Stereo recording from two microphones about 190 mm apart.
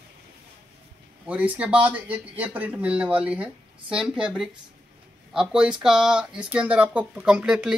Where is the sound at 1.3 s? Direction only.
5° right (ahead or behind).